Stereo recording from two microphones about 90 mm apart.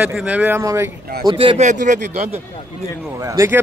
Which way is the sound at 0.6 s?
35° right (ahead or behind).